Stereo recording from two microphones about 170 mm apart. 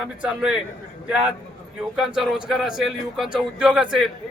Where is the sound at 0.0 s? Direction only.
5° right (ahead or behind).